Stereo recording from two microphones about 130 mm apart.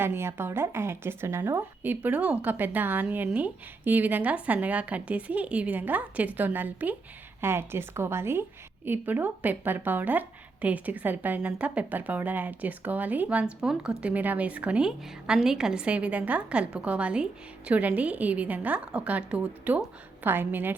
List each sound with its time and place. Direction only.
0.0 s a woman's voice: 20° right (ahead or behind)